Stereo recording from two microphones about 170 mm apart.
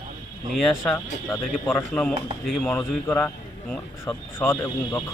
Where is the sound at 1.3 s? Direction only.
10° left (ahead or behind).